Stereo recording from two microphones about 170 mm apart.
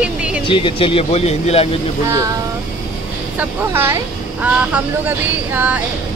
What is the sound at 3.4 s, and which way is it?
Speech, 15° right (ahead or behind).